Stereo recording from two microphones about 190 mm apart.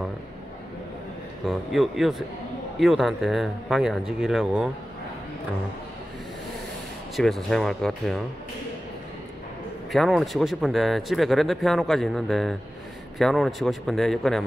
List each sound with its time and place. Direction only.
1.4 s speech: centre (ahead or behind)
7.2 s speech: centre (ahead or behind)
9.9 s speech: centre (ahead or behind)